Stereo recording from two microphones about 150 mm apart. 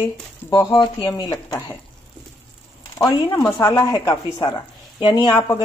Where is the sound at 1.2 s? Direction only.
25° left (ahead or behind).